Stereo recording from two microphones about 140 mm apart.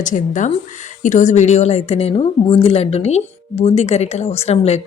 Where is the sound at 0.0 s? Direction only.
65° left (ahead or behind).